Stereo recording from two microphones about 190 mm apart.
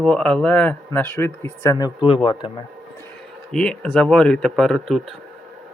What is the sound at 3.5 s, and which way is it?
Speech, 5° left (ahead or behind).